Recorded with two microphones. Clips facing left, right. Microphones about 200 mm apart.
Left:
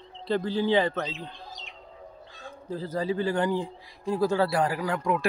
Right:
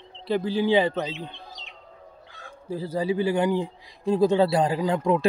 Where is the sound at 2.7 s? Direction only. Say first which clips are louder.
Right 3 dB; 10° right (ahead or behind).